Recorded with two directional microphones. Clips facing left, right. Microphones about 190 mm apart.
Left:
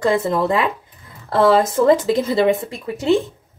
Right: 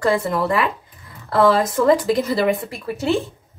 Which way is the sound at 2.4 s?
15° left (ahead or behind).